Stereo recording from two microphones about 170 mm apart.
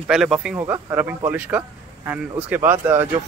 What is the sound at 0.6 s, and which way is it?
Speech, 15° right (ahead or behind).